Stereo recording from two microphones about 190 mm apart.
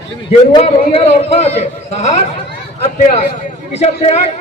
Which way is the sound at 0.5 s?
35° left (ahead or behind).